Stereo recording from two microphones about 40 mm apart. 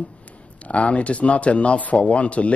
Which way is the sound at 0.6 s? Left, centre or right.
Left.